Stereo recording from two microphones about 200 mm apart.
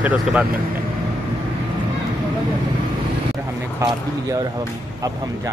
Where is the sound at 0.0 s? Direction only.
5° right (ahead or behind).